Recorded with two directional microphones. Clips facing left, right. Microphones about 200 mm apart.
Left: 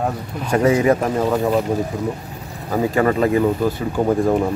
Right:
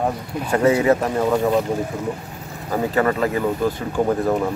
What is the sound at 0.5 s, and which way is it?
Speech, 10° left (ahead or behind).